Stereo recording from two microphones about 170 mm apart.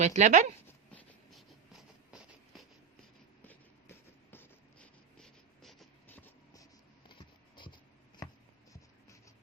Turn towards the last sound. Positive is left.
turn(degrees=30)  # may be behind; listen again after turning